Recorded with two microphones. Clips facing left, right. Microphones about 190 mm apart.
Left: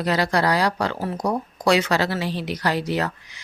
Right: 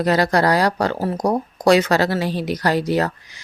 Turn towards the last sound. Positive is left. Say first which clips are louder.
# right 5 dB
turn(degrees=-40)  # may be behind; listen again after turning